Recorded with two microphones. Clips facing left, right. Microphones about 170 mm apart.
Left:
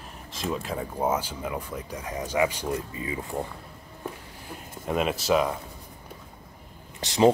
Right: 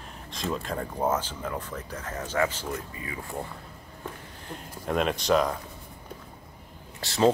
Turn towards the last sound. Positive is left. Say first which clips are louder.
# left 3 dB
turn(degrees=20)  # may be behind; listen again after turning